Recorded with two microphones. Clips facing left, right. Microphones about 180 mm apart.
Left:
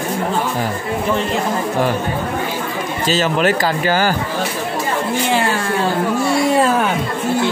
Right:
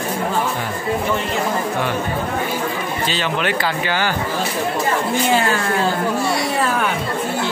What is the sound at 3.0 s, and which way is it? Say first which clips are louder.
A man's voice: left 7 dB; 40° left (ahead or behind).